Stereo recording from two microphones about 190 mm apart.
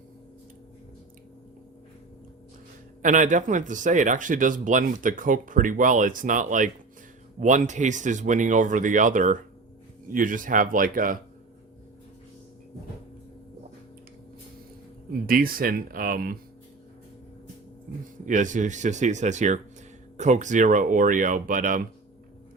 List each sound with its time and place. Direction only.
3.0 s speech: 40° right (ahead or behind)
15.3 s speech: 50° right (ahead or behind)
18.3 s speech: 40° right (ahead or behind)